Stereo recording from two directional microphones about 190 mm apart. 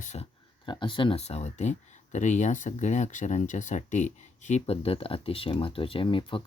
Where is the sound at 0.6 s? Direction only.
25° left (ahead or behind).